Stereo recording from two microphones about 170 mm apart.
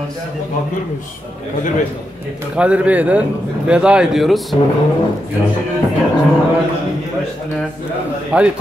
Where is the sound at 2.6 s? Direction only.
10° right (ahead or behind).